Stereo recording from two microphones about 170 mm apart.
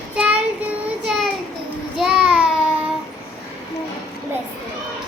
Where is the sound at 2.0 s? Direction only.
5° right (ahead or behind).